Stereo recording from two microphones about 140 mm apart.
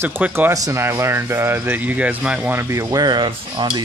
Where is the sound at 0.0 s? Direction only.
15° right (ahead or behind).